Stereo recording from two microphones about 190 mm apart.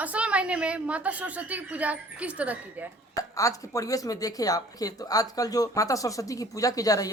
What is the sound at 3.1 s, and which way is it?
Speech, 15° left (ahead or behind).